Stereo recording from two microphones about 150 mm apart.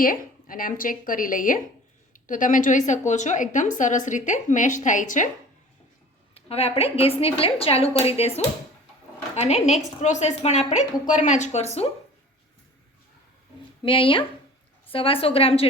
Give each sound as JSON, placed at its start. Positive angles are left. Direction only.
{"t": 0.0, "sound": "a woman's voice", "side_deg": 65}
{"t": 6.3, "sound": "a woman's voice", "side_deg": 40}
{"t": 9.3, "sound": "a woman's voice", "side_deg": 50}
{"t": 13.8, "sound": "a woman's voice", "side_deg": 35}